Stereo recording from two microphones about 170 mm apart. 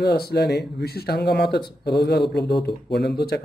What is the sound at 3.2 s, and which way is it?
Speech, 70° left (ahead or behind).